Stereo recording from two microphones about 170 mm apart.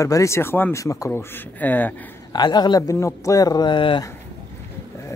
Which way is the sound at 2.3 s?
25° left (ahead or behind).